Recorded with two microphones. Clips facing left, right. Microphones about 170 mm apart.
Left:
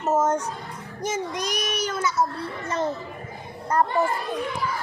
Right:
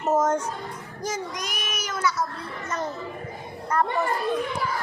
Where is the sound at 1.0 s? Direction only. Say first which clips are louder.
Left 3 dB; 25° left (ahead or behind).